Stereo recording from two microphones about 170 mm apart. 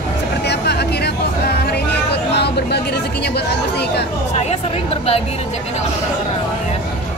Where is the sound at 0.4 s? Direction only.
75° left (ahead or behind).